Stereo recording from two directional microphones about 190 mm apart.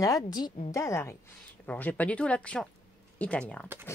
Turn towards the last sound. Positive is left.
turn(degrees=5)  # may be behind; listen again after turning